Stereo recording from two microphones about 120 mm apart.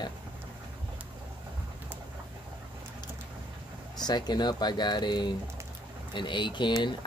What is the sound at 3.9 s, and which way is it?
Speech, 35° left (ahead or behind).